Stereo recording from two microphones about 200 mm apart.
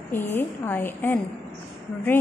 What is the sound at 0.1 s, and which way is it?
A woman's voice, 10° left (ahead or behind).